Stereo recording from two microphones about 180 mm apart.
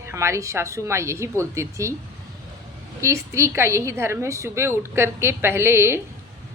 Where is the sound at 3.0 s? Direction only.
15° right (ahead or behind).